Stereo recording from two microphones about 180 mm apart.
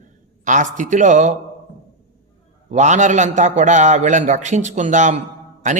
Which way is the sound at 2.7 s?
40° right (ahead or behind).